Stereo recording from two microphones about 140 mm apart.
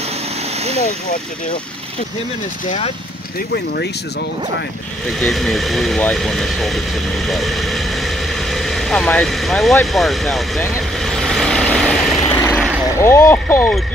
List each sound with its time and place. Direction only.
5.2 s speech: centre (ahead or behind)
11.0 s vehicle: 5° left (ahead or behind)
12.3 s vehicle: 15° left (ahead or behind)
13.0 s speech: 20° left (ahead or behind)